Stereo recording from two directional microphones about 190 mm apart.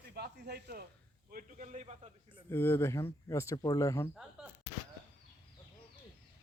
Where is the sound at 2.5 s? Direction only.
10° left (ahead or behind).